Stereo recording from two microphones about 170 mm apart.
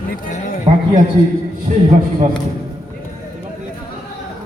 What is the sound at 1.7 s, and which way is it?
Speech, 45° right (ahead or behind).